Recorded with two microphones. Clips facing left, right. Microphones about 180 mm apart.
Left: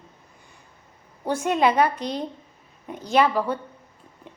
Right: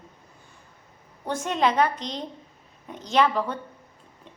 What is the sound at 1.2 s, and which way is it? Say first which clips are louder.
A woman's voice: left 3 dB; 10° left (ahead or behind).